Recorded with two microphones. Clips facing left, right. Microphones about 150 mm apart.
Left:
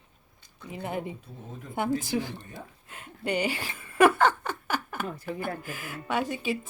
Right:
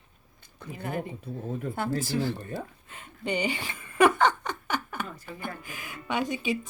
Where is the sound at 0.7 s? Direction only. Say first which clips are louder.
Even; 25° left (ahead or behind).